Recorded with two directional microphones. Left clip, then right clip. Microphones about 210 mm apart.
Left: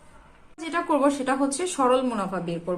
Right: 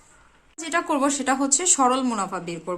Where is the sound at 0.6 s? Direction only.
40° right (ahead or behind).